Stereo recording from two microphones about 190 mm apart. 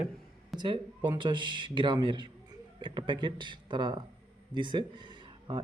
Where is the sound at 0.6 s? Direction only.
25° right (ahead or behind).